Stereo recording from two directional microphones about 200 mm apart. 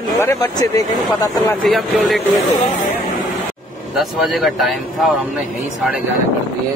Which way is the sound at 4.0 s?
Centre (ahead or behind).